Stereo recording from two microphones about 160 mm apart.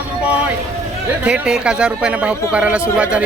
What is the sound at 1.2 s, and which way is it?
Speech, 5° right (ahead or behind).